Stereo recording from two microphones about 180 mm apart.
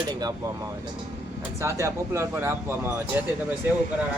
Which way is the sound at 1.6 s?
15° right (ahead or behind).